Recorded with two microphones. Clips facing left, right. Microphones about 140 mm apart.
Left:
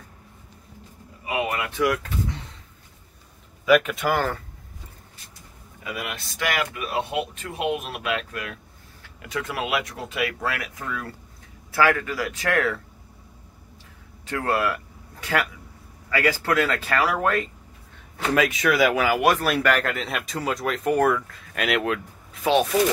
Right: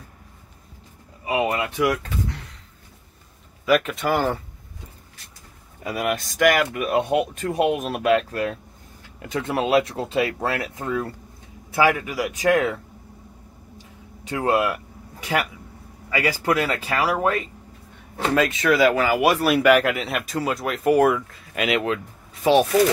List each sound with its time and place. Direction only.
1.2 s speech: 30° right (ahead or behind)
1.7 s speech: 10° right (ahead or behind)
3.6 s speech: centre (ahead or behind)
5.9 s speech: 40° right (ahead or behind)
11.7 s speech: 15° right (ahead or behind)
14.2 s speech: 15° right (ahead or behind); by 22.7 s centre (ahead or behind)